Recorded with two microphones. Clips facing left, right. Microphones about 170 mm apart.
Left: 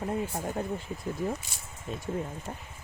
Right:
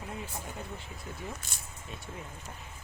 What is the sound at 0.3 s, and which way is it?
Speech, 50° left (ahead or behind).